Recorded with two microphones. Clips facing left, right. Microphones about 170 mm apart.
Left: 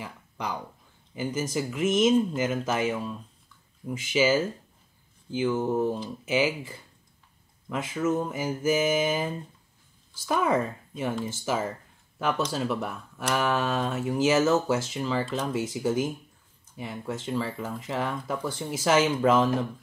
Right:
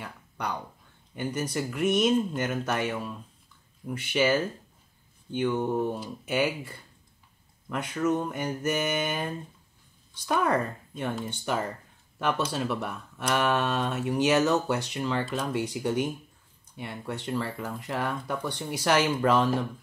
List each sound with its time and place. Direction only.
0.0 s speech: 5° left (ahead or behind)